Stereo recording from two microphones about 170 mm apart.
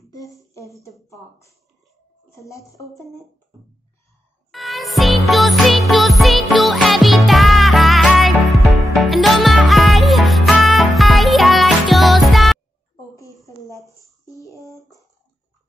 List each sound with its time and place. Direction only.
2.3 s a woman's voice: 20° left (ahead or behind)
4.5 s music: centre (ahead or behind)
13.1 s a sound: 20° left (ahead or behind)